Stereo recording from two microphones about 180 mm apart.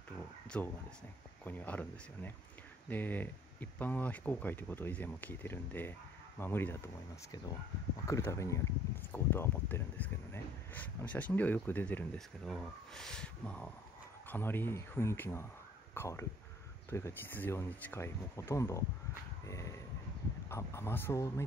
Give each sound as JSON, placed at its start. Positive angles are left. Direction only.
{"t": 0.5, "sound": "speech", "side_deg": 10}
{"t": 8.1, "sound": "speech", "side_deg": 15}
{"t": 19.4, "sound": "a sound", "side_deg": 15}
{"t": 20.4, "sound": "speech", "side_deg": 15}